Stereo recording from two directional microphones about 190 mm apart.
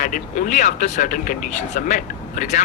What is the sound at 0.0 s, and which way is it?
Speech, 45° left (ahead or behind).